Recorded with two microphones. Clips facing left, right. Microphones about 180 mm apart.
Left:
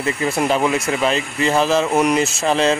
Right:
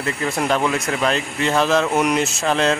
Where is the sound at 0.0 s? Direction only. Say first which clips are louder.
Left 3 dB; 5° left (ahead or behind).